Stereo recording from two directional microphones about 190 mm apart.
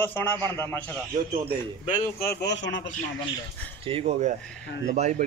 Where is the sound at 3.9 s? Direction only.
30° right (ahead or behind).